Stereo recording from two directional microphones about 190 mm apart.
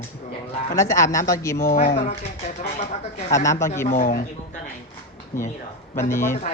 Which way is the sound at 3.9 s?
45° left (ahead or behind).